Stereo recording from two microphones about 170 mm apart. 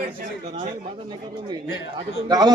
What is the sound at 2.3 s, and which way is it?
Speech, 20° right (ahead or behind).